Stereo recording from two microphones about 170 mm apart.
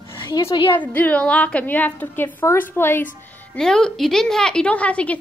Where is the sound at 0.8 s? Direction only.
10° left (ahead or behind).